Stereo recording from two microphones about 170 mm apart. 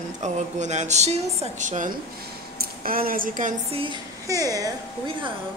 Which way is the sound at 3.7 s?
30° right (ahead or behind).